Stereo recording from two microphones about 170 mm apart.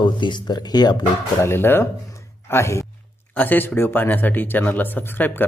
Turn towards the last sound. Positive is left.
turn(degrees=10)  # may be behind; listen again after turning